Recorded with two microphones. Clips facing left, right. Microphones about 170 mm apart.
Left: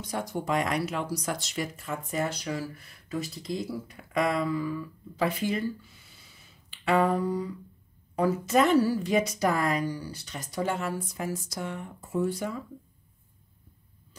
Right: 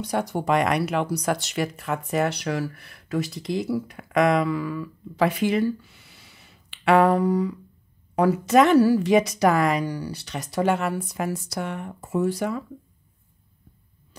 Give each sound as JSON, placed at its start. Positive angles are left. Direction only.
{"t": 0.0, "sound": "speech", "side_deg": -70}